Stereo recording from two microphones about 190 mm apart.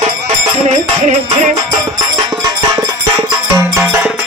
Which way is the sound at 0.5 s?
35° right (ahead or behind).